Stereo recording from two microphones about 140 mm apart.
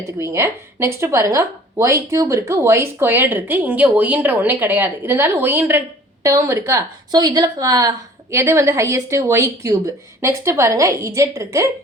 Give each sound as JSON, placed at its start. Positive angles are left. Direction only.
{"t": 0.0, "sound": "a woman's voice", "side_deg": -20}